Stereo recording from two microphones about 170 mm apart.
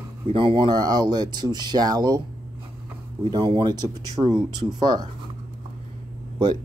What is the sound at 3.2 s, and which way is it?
Speech, 30° right (ahead or behind).